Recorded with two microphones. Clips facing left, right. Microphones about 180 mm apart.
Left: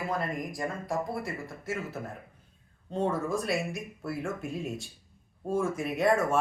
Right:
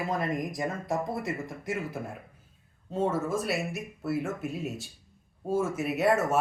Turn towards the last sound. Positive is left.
turn(degrees=-5)  # may be behind; listen again after turning